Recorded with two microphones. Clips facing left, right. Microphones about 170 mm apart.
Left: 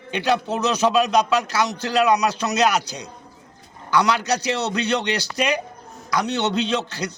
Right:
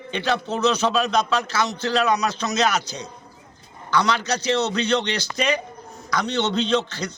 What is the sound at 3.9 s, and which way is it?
A man's voice, 10° left (ahead or behind).